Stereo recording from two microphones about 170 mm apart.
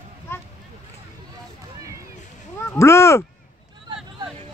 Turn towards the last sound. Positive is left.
turn(degrees=15)  # may be behind; listen again after turning